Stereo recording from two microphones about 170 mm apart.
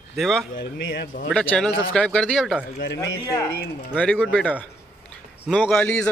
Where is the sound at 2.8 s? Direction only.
75° left (ahead or behind).